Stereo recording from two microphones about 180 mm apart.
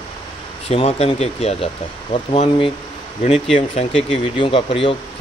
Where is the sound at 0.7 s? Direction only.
35° left (ahead or behind).